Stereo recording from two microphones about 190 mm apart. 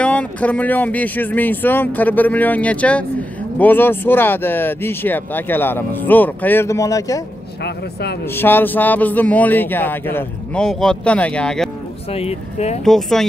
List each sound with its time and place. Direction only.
0.0 s speech: 5° left (ahead or behind)
7.6 s speech: 60° left (ahead or behind)
8.3 s speech: 10° left (ahead or behind)
12.1 s speech: 30° left (ahead or behind)
12.8 s speech: centre (ahead or behind)